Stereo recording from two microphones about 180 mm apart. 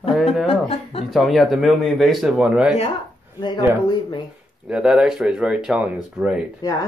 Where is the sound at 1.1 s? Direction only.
Centre (ahead or behind).